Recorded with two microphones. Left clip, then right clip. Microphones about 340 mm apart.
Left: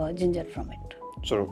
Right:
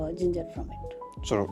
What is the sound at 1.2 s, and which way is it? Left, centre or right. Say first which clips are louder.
Speech: left 1 dB; right.